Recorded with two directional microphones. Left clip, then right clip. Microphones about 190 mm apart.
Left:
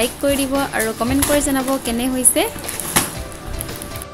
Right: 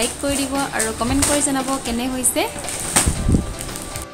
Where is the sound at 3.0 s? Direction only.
20° left (ahead or behind).